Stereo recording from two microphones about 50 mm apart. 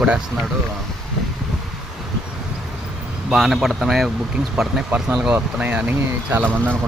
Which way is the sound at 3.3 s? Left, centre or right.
Centre.